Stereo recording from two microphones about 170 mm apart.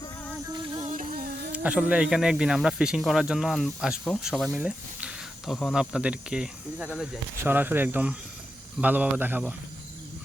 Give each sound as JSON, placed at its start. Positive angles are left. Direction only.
{"t": 0.5, "sound": "music", "side_deg": -25}
{"t": 0.8, "sound": "music", "side_deg": -45}
{"t": 1.5, "sound": "speech", "side_deg": -10}